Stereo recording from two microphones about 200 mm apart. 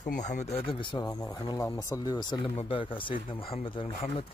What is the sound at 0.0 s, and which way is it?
Speech, 40° left (ahead or behind).